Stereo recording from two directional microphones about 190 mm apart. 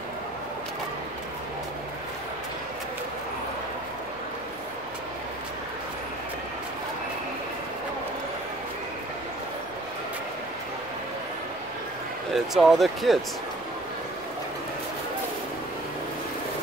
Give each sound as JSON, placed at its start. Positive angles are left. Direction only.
{"t": 12.4, "sound": "speech", "side_deg": 0}